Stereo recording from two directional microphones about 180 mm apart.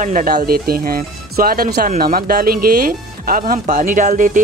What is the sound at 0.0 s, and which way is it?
Speech, 50° right (ahead or behind).